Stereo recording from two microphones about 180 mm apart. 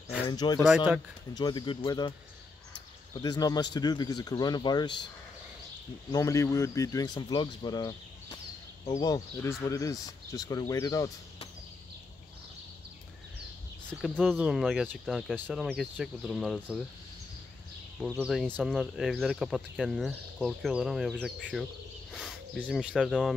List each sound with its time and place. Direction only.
0.3 s speech: 25° left (ahead or behind)
3.2 s speech: 20° left (ahead or behind)
6.1 s speech: 15° left (ahead or behind)
13.8 s speech: 5° left (ahead or behind)
14.2 s speech: 5° right (ahead or behind)
18.1 s speech: 5° right (ahead or behind)